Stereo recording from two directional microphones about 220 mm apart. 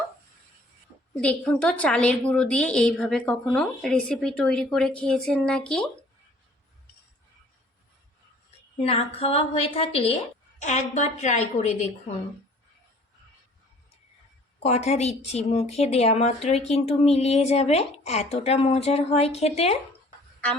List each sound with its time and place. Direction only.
1.2 s a woman's voice: 5° left (ahead or behind)
8.8 s a woman's voice: 25° left (ahead or behind)
14.6 s speech: 30° left (ahead or behind)